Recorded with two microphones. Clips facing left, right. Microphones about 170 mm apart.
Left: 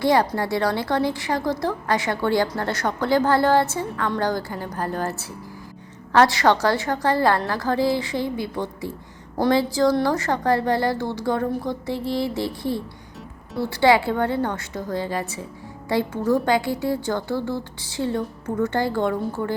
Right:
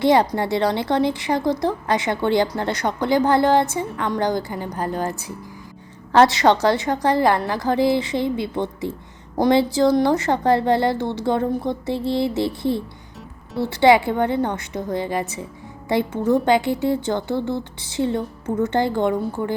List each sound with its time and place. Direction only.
0.0 s a woman's voice: 20° right (ahead or behind)